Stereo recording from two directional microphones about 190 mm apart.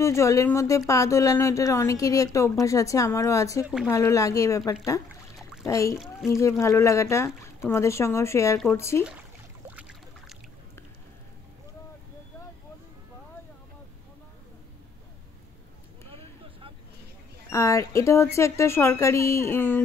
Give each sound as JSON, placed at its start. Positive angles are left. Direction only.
{"t": 0.0, "sound": "speech", "side_deg": 15}
{"t": 9.8, "sound": "boat", "side_deg": -5}
{"t": 16.1, "sound": "vehicle", "side_deg": -30}
{"t": 17.5, "sound": "speech", "side_deg": 15}